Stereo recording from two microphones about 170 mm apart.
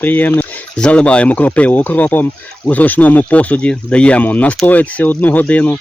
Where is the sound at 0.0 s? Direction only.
10° left (ahead or behind).